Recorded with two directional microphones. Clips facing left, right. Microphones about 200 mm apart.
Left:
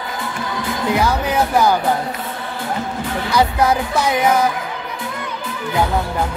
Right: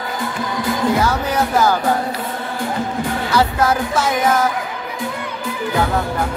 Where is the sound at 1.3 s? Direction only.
15° left (ahead or behind).